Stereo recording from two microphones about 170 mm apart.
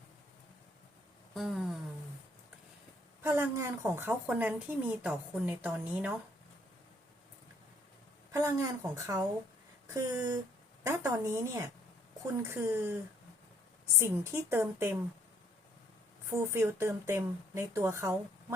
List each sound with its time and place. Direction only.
1.3 s a sound: centre (ahead or behind)
3.2 s a woman's voice: 15° right (ahead or behind)
8.3 s a woman's voice: 15° right (ahead or behind)
14.0 s a woman's voice: 15° right (ahead or behind)
16.3 s a woman's voice: 15° right (ahead or behind)